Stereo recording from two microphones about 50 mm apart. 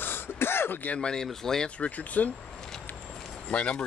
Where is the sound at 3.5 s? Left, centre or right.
Left.